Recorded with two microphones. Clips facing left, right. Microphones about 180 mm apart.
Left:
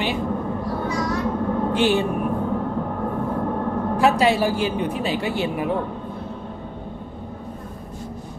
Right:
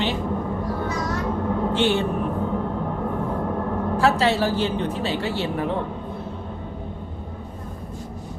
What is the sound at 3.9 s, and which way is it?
Speech, 15° left (ahead or behind).